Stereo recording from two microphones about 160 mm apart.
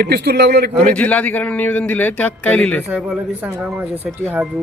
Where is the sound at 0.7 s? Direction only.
5° left (ahead or behind).